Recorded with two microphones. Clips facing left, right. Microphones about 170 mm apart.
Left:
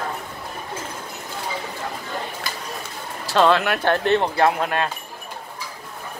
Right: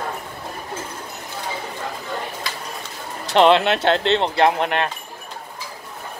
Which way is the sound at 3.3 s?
20° right (ahead or behind).